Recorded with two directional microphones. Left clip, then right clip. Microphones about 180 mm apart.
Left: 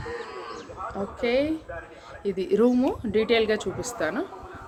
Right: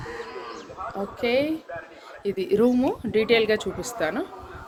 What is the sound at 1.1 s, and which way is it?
Speech, 5° right (ahead or behind).